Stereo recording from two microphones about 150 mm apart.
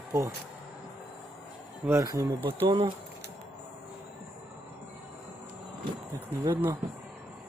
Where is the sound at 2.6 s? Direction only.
35° right (ahead or behind).